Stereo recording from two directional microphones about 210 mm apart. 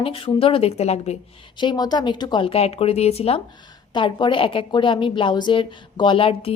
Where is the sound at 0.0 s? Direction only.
25° left (ahead or behind).